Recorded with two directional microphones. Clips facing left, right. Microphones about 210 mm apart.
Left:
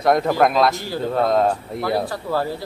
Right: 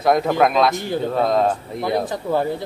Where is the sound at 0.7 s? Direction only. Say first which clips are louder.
Right 4 dB; 20° right (ahead or behind).